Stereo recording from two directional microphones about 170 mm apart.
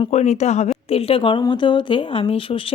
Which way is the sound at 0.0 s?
40° left (ahead or behind).